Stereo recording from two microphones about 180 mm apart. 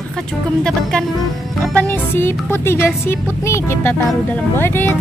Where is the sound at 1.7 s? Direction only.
10° left (ahead or behind).